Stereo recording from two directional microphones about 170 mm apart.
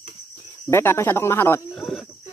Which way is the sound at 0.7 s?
15° left (ahead or behind).